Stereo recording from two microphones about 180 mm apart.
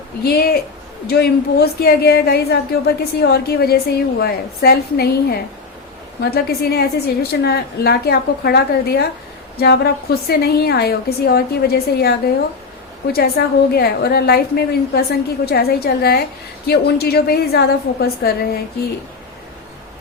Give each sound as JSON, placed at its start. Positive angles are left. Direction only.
{"t": 0.3, "sound": "a woman's voice", "side_deg": 60}